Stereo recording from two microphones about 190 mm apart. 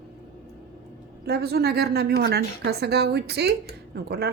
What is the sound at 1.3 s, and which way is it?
A woman's voice, 55° right (ahead or behind).